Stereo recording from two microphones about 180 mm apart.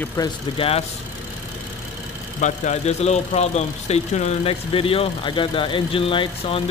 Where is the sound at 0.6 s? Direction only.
35° left (ahead or behind).